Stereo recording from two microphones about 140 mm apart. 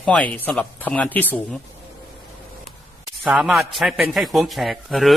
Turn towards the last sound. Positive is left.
turn(degrees=0)  # may be behind; listen again after turning